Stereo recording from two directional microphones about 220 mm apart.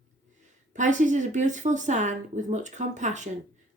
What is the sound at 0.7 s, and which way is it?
Speech, 35° right (ahead or behind).